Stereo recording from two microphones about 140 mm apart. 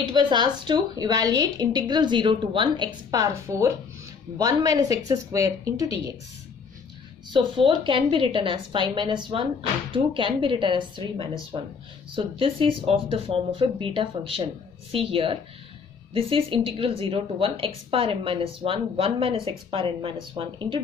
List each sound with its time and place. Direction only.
0.0 s a woman's voice: 35° right (ahead or behind)
7.2 s a woman's voice: 35° right (ahead or behind)
12.2 s a woman's voice: 40° right (ahead or behind)